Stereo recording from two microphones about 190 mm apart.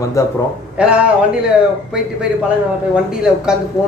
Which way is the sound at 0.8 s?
5° right (ahead or behind).